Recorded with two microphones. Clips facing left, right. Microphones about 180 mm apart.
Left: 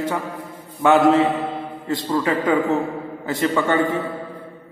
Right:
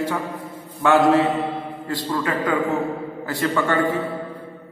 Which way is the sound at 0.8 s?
20° left (ahead or behind).